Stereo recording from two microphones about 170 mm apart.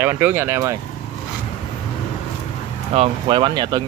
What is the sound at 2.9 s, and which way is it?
Speech, 35° right (ahead or behind).